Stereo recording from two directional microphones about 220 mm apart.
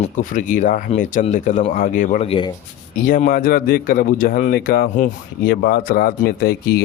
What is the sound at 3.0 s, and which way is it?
Speech, 40° left (ahead or behind).